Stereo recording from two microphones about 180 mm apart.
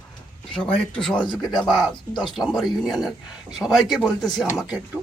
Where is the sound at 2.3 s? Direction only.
Centre (ahead or behind).